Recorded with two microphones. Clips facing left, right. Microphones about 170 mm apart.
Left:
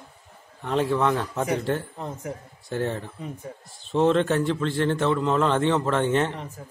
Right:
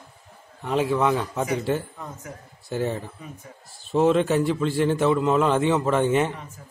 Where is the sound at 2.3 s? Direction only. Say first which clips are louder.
Left 5 dB; 25° left (ahead or behind).